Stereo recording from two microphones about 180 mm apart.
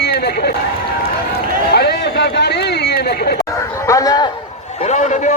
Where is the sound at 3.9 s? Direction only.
20° left (ahead or behind).